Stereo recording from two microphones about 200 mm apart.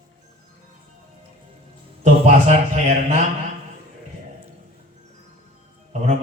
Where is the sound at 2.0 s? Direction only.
35° right (ahead or behind).